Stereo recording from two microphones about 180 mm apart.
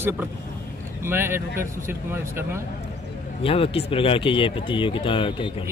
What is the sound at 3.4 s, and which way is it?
Speech, 30° left (ahead or behind).